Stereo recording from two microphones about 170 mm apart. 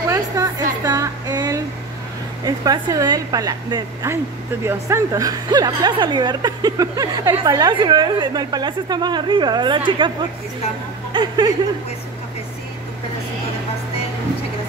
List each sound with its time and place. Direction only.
0.1 s music: 20° right (ahead or behind)
2.4 s a woman's voice: 20° right (ahead or behind)
11.1 s a woman's voice: 25° right (ahead or behind)